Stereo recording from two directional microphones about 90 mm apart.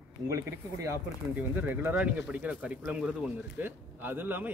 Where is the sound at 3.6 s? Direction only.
20° right (ahead or behind).